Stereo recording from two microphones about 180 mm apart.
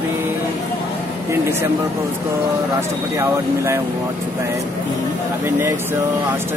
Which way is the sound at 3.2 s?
15° right (ahead or behind).